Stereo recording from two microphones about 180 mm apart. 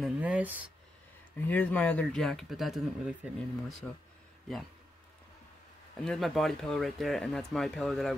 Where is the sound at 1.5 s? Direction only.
10° left (ahead or behind).